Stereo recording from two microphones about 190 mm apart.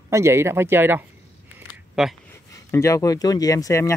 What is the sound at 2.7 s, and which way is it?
Speech, 15° left (ahead or behind).